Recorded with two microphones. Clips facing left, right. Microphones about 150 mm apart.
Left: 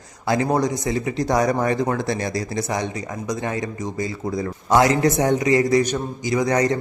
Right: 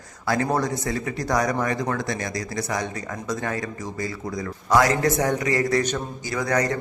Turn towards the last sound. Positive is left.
turn(degrees=20)  # may be behind; listen again after turning